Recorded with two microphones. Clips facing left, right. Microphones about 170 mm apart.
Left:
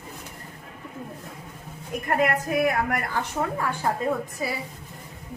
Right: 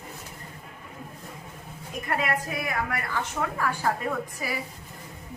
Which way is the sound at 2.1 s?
50° left (ahead or behind).